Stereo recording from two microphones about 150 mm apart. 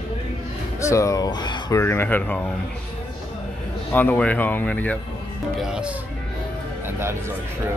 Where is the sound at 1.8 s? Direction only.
15° left (ahead or behind).